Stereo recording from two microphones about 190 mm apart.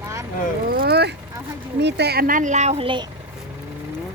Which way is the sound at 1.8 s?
65° right (ahead or behind).